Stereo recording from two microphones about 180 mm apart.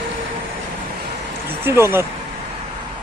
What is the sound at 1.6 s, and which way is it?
Speech, 15° right (ahead or behind).